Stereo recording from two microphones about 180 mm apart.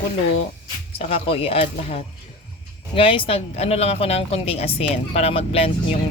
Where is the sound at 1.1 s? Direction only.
30° left (ahead or behind).